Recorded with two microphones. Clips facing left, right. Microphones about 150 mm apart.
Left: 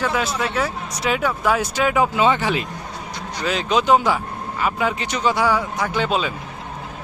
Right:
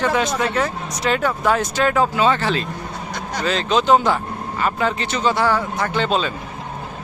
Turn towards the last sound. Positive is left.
turn(degrees=10)  # may be behind; listen again after turning